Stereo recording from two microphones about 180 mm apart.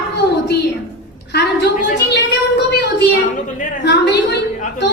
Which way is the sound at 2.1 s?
75° left (ahead or behind).